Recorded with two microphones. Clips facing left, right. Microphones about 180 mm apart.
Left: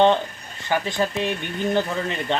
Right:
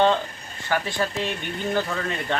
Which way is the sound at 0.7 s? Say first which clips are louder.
Left 2 dB; 20° left (ahead or behind).